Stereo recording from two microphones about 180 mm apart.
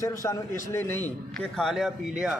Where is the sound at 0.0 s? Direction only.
15° left (ahead or behind); by 2.4 s 5° right (ahead or behind).